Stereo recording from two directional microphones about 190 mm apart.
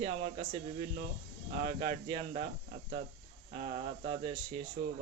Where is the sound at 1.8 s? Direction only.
30° right (ahead or behind).